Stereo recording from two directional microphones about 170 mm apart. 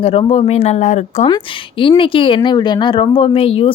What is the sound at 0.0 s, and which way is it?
Speech, 35° left (ahead or behind).